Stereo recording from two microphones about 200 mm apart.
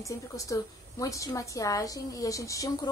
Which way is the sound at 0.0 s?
15° left (ahead or behind).